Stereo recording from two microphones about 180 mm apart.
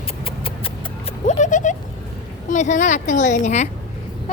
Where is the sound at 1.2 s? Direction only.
45° left (ahead or behind).